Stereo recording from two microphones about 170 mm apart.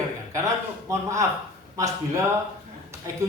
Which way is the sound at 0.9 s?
20° right (ahead or behind).